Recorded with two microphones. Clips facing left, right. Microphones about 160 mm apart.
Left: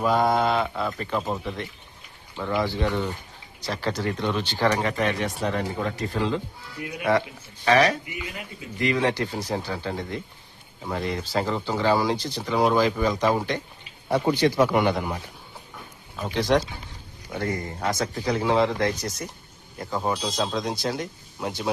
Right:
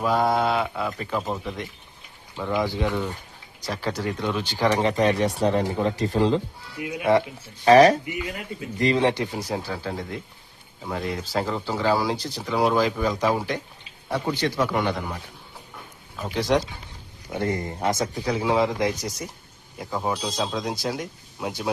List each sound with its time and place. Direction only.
0.0 s speech: centre (ahead or behind)
4.8 s speech: 30° right (ahead or behind)
6.8 s speech: 20° right (ahead or behind)
7.6 s speech: 40° right (ahead or behind)
9.0 s speech: 20° right (ahead or behind)
9.3 s speech: 5° right (ahead or behind)
14.1 s a man's voice: 15° left (ahead or behind)
16.1 s speech: 5° right (ahead or behind)
17.3 s speech: 25° right (ahead or behind)
18.1 s speech: 5° right (ahead or behind)